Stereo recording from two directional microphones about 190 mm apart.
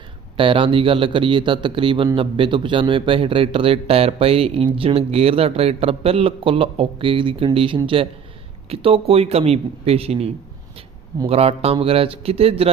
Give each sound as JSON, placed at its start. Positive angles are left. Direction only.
{"t": 0.3, "sound": "a man's voice", "side_deg": -30}